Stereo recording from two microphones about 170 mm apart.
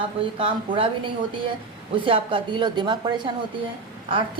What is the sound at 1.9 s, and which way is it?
A woman's voice, 30° right (ahead or behind).